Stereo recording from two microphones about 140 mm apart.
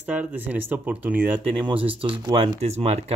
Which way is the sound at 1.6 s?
40° right (ahead or behind).